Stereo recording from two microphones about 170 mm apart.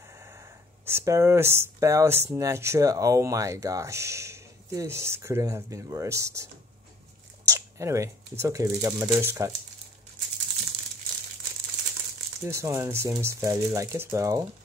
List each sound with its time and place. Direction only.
0.8 s speech: 15° right (ahead or behind)
12.4 s speech: 15° right (ahead or behind)